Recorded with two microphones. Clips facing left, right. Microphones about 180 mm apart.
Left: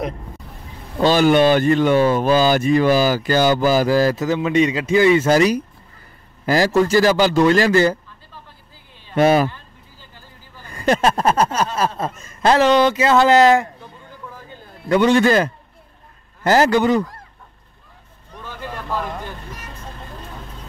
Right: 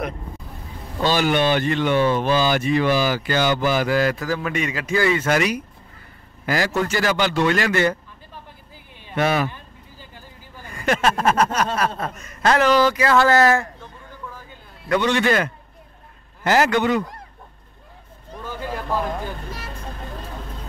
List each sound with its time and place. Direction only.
1.0 s speech: 45° left (ahead or behind)
4.2 s a man's voice: 20° left (ahead or behind)
9.1 s speech: 35° left (ahead or behind)
9.5 s vehicle: 15° right (ahead or behind)
10.7 s speech: 35° left (ahead or behind); by 13.7 s 20° left (ahead or behind)
15.1 s speech: 35° left (ahead or behind)
18.4 s a sound: 10° right (ahead or behind)